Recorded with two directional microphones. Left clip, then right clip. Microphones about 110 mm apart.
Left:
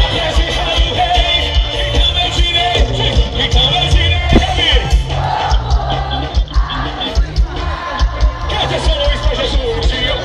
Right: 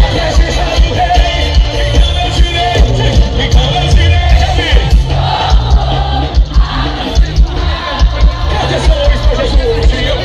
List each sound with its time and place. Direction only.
0.1 s music: 15° left (ahead or behind)